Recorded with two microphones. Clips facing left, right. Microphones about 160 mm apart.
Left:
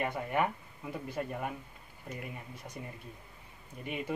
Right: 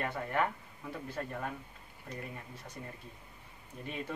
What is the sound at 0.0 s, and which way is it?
Speech, 15° left (ahead or behind).